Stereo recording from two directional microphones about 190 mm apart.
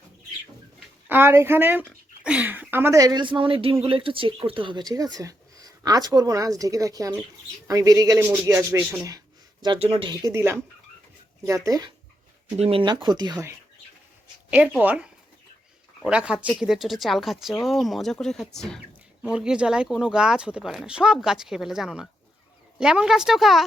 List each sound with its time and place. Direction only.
1.0 s a man's voice: 10° right (ahead or behind)
11.6 s speech: 20° right (ahead or behind)
12.5 s speech: 30° right (ahead or behind)
14.5 s a man's voice: 5° right (ahead or behind)